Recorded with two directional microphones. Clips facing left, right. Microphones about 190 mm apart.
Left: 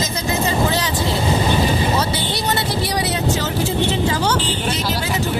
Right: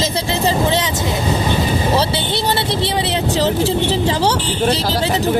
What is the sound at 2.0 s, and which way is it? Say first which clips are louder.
Speech: right 3 dB; 30° right (ahead or behind).